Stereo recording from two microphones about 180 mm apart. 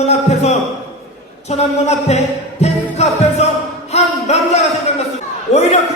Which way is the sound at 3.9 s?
35° left (ahead or behind).